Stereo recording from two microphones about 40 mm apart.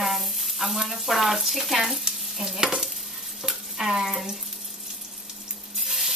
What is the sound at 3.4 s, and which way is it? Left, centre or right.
Water tap, centre.